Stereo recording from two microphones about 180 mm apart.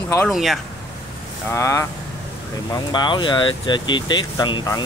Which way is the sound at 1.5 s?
15° left (ahead or behind).